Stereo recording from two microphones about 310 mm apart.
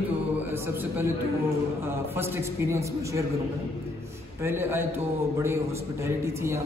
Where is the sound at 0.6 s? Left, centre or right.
Centre.